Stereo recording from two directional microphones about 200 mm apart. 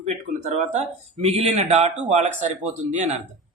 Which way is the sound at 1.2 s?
30° right (ahead or behind).